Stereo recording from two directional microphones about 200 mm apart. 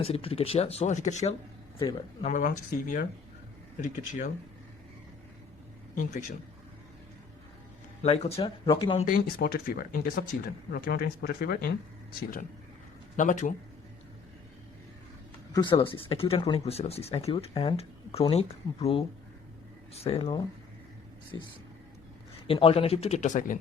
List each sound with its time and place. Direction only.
0.0 s speech: 30° left (ahead or behind)
1.8 s speech: 20° left (ahead or behind)
2.2 s speech: 40° left (ahead or behind)
8.0 s speech: 30° left (ahead or behind)
9.0 s speech: 45° left (ahead or behind)
13.1 s speech: 40° left (ahead or behind)
15.5 s speech: 25° left (ahead or behind); by 23.6 s 40° left (ahead or behind)